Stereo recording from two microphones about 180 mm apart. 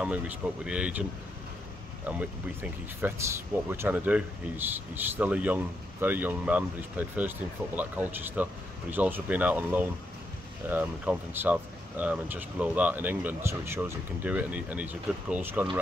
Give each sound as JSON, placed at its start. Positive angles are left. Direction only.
{"t": 0.0, "sound": "speech", "side_deg": -5}
{"t": 2.1, "sound": "speech", "side_deg": -10}